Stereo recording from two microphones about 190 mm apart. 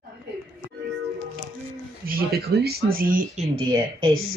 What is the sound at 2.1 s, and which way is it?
Speech, 55° right (ahead or behind).